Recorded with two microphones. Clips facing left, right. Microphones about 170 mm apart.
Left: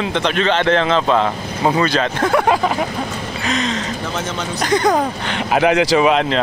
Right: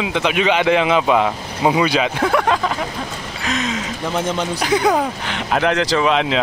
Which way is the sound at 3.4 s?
5° right (ahead or behind).